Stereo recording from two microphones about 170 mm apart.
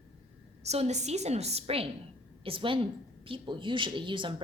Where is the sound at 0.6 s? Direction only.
40° right (ahead or behind).